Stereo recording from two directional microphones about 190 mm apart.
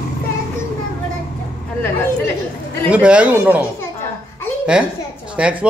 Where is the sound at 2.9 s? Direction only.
5° right (ahead or behind).